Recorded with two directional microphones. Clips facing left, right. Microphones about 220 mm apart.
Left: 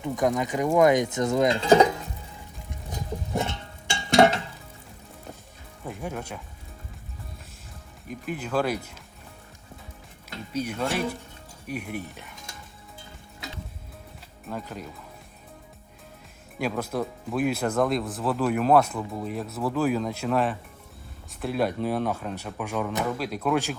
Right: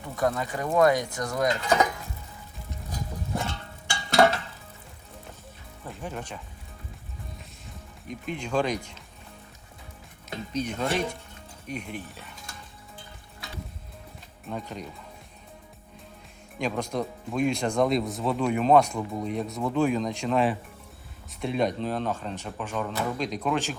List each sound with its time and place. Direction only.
0.0 s speech: 15° left (ahead or behind)
2.9 s music: 20° left (ahead or behind)
6.0 s speech: 10° left (ahead or behind)
8.0 s speech: 5° left (ahead or behind)
10.5 s speech: 10° left (ahead or behind)
14.5 s speech: centre (ahead or behind)
16.6 s speech: 5° left (ahead or behind)